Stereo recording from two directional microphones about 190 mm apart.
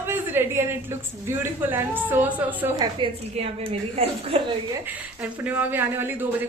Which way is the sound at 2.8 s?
30° right (ahead or behind).